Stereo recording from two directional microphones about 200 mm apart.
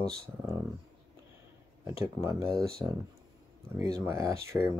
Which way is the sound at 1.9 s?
15° right (ahead or behind).